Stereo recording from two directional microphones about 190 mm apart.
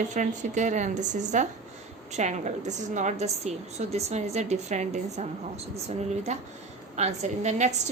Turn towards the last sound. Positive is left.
turn(degrees=-35)  # may be behind; listen again after turning